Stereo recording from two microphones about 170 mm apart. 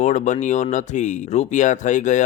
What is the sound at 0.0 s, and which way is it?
Speech, 45° left (ahead or behind).